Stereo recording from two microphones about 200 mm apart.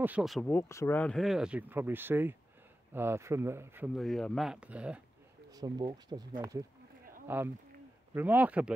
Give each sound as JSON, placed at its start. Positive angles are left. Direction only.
{"t": 0.0, "sound": "speech", "side_deg": -5}
{"t": 0.5, "sound": "speech", "side_deg": 10}
{"t": 3.9, "sound": "speech", "side_deg": 0}
{"t": 5.5, "sound": "speech", "side_deg": -20}
{"t": 7.2, "sound": "speech", "side_deg": -10}